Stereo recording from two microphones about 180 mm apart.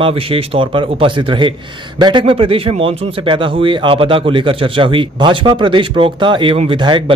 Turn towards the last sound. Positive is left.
turn(degrees=-25)  # may be behind; listen again after turning